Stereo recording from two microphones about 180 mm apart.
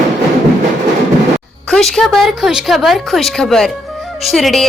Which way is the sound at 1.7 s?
5° left (ahead or behind).